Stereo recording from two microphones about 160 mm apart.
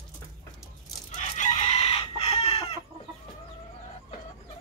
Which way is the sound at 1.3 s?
50° left (ahead or behind).